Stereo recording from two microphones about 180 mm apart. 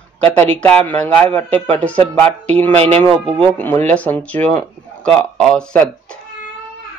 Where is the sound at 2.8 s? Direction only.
35° right (ahead or behind).